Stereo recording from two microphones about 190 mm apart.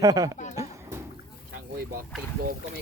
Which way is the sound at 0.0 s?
20° right (ahead or behind).